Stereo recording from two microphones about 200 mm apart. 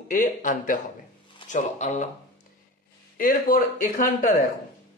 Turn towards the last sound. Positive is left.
turn(degrees=40)  # may be behind; listen again after turning